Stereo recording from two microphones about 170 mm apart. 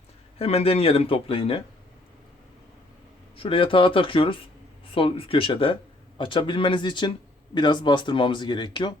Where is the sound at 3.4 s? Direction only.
30° left (ahead or behind).